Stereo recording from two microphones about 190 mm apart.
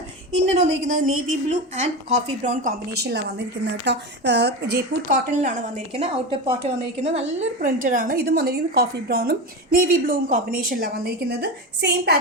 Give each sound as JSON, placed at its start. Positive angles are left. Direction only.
{"t": 0.5, "sound": "a woman's voice", "side_deg": -35}
{"t": 2.9, "sound": "a woman's voice", "side_deg": -60}
{"t": 5.3, "sound": "a woman's voice", "side_deg": -40}